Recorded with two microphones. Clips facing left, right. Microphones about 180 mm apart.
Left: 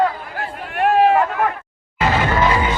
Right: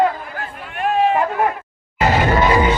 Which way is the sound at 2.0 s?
40° right (ahead or behind).